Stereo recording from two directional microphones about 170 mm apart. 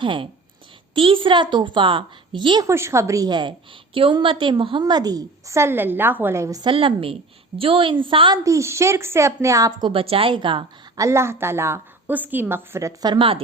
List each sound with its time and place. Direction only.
0.0 s a woman's voice: 30° right (ahead or behind)
2.6 s a woman's voice: 15° right (ahead or behind)
8.4 s a woman's voice: 15° right (ahead or behind)
9.9 s a woman's voice: 35° right (ahead or behind)
11.0 s a woman's voice: 15° right (ahead or behind); by 13.4 s 30° right (ahead or behind)